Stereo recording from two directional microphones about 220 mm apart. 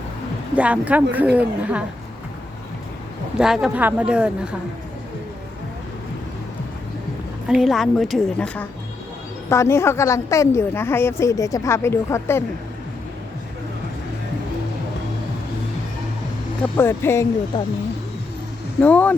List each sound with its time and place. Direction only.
0.5 s speech: 5° right (ahead or behind)
3.3 s a woman's voice: centre (ahead or behind)
7.4 s a woman's voice: centre (ahead or behind)
16.7 s a woman's voice: 10° left (ahead or behind)
18.8 s a woman's voice: 5° left (ahead or behind)